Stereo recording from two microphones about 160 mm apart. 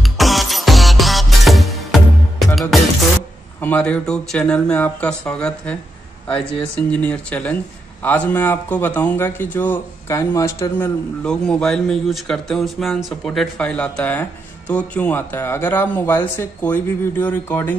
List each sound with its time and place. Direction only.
0.0 s music: centre (ahead or behind)
3.6 s a man's voice: 10° left (ahead or behind)
11.2 s a man's voice: 5° left (ahead or behind)